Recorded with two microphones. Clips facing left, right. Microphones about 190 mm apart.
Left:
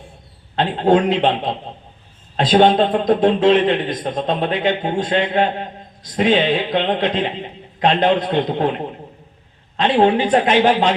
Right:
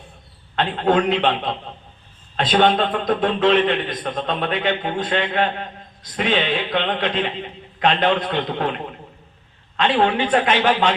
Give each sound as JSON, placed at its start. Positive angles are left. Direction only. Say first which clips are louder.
{"t": 0.5, "sound": "a man's voice", "louder": "left 3 dB", "side_deg": 30}